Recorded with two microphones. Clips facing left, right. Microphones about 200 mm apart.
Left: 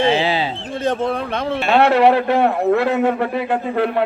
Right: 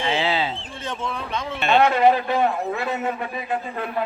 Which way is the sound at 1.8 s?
70° left (ahead or behind).